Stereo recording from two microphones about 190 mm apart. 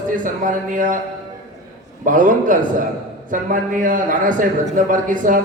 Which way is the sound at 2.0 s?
45° right (ahead or behind).